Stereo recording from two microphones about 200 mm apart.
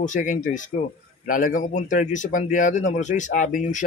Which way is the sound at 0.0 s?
40° left (ahead or behind).